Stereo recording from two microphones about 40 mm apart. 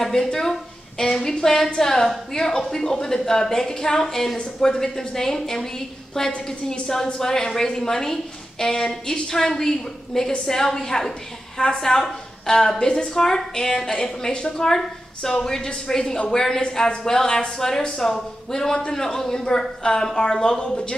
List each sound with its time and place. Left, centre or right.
0.0 s a woman's voice: centre